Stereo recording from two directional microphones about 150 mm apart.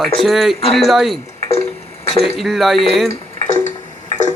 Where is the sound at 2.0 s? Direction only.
45° left (ahead or behind).